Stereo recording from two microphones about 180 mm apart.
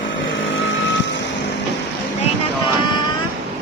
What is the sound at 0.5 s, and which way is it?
Reversing beeps, 90° left.